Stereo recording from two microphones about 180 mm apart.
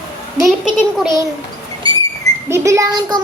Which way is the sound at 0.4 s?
Centre (ahead or behind).